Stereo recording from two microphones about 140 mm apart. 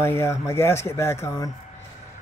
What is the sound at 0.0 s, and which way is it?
Speech, 20° left (ahead or behind).